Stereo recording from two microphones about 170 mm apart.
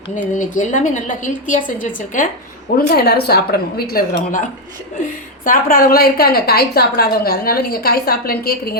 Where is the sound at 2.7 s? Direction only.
65° left (ahead or behind).